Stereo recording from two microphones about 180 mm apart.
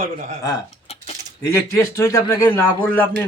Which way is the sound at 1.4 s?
15° left (ahead or behind).